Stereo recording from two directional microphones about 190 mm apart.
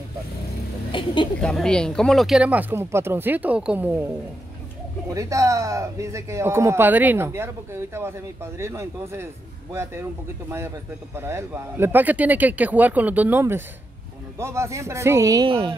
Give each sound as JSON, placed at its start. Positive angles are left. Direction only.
{"t": 0.9, "sound": "speech", "side_deg": 25}
{"t": 1.4, "sound": "speech", "side_deg": 5}
{"t": 5.1, "sound": "speech", "side_deg": -15}
{"t": 11.1, "sound": "speech", "side_deg": -15}